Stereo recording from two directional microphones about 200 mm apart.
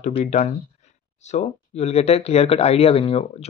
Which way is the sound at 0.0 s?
35° left (ahead or behind).